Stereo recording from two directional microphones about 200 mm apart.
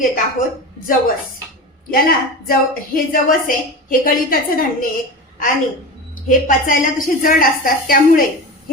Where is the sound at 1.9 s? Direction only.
45° left (ahead or behind).